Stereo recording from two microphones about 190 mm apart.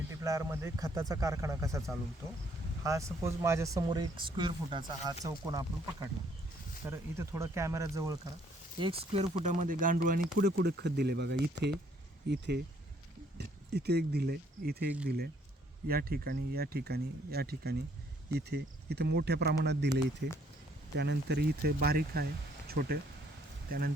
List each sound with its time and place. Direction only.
0.1 s speech: 15° right (ahead or behind)
8.8 s speech: 30° right (ahead or behind)
10.3 s speech: 60° right (ahead or behind)